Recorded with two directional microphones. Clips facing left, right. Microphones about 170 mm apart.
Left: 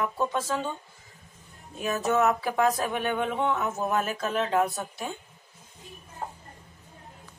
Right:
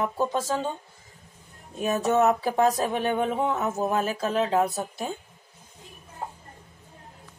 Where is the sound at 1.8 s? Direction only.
35° right (ahead or behind).